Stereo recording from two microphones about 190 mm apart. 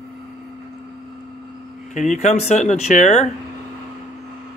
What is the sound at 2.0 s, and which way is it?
Speech, 40° left (ahead or behind).